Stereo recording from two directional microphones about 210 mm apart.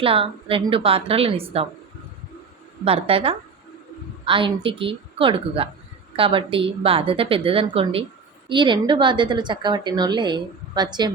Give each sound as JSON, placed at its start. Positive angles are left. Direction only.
{"t": 0.0, "sound": "a woman's voice", "side_deg": -25}
{"t": 2.8, "sound": "a woman's voice", "side_deg": -25}